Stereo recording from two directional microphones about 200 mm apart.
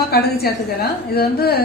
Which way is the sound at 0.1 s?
50° left (ahead or behind).